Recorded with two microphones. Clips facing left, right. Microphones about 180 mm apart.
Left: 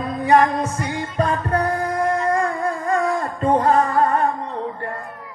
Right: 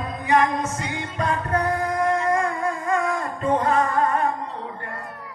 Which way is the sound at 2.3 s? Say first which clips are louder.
Left 2 dB; 35° left (ahead or behind).